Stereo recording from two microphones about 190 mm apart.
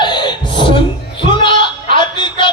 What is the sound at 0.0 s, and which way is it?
Beatboxing, 25° left (ahead or behind).